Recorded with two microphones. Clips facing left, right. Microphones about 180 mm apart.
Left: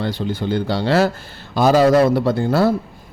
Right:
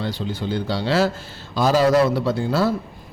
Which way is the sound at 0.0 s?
55° left (ahead or behind).